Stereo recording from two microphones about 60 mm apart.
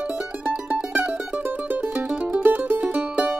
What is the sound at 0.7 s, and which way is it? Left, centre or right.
Music, right.